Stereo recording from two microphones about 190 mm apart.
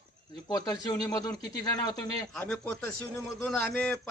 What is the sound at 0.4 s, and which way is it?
Speech, 20° left (ahead or behind).